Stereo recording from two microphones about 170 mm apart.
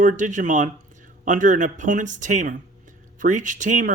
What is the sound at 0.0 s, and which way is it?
Speech, 50° right (ahead or behind).